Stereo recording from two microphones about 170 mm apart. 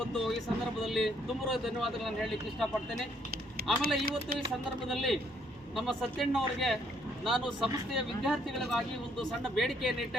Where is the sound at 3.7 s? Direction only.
Centre (ahead or behind).